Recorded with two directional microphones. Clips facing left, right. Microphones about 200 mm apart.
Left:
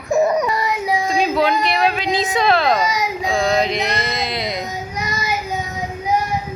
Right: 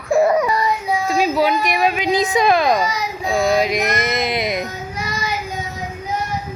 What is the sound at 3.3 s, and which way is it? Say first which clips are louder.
Music: right 2 dB; 10° right (ahead or behind).